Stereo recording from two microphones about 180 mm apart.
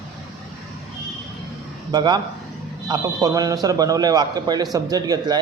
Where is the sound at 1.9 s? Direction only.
25° right (ahead or behind).